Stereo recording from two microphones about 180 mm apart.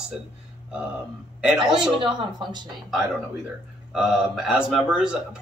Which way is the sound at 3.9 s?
5° right (ahead or behind).